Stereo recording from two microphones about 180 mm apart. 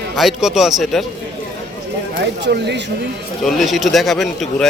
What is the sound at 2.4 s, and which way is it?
Speech, 70° right (ahead or behind).